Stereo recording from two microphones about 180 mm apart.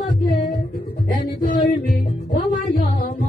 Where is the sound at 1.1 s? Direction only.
50° left (ahead or behind).